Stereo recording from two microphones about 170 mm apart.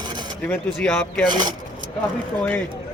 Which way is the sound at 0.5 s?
10° left (ahead or behind).